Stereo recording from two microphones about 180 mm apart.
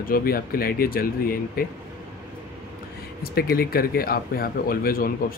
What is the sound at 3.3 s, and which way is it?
Speech, 60° left (ahead or behind).